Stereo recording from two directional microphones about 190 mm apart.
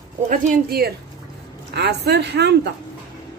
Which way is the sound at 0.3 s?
55° right (ahead or behind).